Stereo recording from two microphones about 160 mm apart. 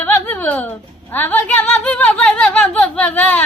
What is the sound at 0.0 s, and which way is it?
Speech, 10° left (ahead or behind).